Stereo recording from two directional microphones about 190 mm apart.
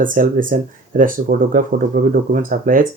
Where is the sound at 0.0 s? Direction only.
45° right (ahead or behind).